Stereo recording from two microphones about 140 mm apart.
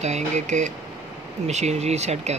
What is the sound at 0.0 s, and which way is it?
Speech, 55° right (ahead or behind).